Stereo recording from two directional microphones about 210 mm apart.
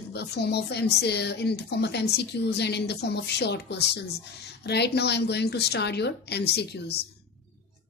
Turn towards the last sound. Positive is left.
turn(degrees=50)  # may be behind; listen again after turning